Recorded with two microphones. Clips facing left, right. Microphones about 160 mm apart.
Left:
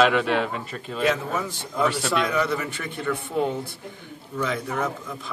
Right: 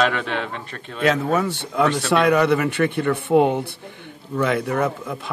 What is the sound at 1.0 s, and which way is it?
Speech, 70° right (ahead or behind).